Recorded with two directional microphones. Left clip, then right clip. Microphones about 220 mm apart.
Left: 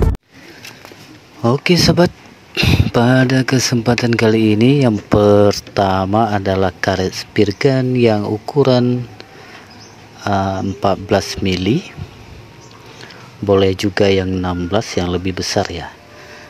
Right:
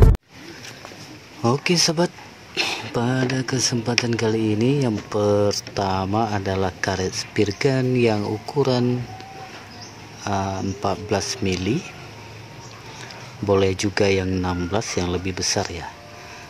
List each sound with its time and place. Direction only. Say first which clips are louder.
1.4 s speech: left 5 dB; 20° left (ahead or behind)
10.2 s speech: left 7 dB; 25° left (ahead or behind)
13.5 s speech: left 6 dB; 20° left (ahead or behind)